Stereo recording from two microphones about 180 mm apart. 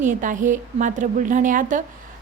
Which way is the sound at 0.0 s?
45° right (ahead or behind).